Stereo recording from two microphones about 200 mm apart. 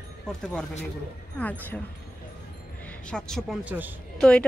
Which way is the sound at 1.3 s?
10° left (ahead or behind).